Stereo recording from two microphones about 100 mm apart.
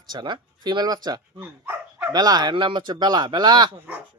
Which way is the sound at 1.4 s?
20° right (ahead or behind).